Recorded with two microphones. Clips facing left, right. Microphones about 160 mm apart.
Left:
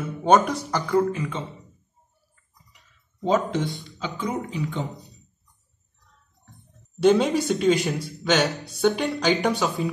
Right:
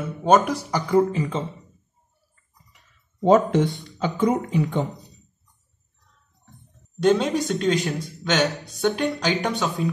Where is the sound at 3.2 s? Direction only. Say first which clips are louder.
Right 6 dB; 55° right (ahead or behind).